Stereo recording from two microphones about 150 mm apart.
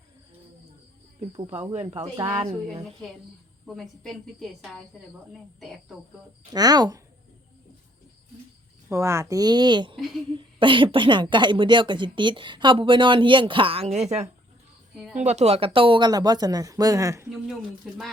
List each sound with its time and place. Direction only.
2.1 s speech: 20° right (ahead or behind)
3.7 s a woman's voice: centre (ahead or behind)
6.5 s speech: 25° right (ahead or behind)
8.9 s speech: 20° right (ahead or behind)
17.8 s a woman's voice: centre (ahead or behind)